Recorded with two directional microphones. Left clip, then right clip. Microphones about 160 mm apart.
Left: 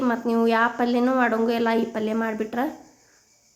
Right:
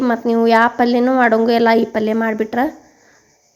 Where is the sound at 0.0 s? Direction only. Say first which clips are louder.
Right 7 dB; 35° right (ahead or behind).